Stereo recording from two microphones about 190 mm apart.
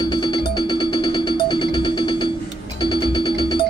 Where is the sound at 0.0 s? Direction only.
25° left (ahead or behind).